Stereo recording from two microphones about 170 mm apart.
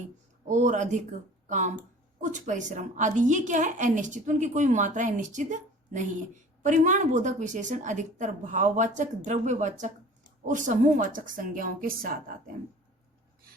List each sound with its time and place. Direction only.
0.4 s a woman's voice: 45° right (ahead or behind)